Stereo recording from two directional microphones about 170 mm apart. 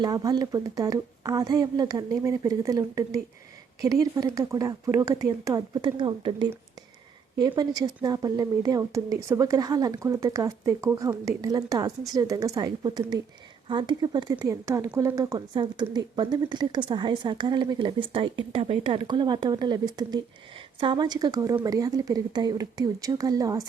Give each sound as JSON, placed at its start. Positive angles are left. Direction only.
{"t": 0.0, "sound": "speech", "side_deg": -25}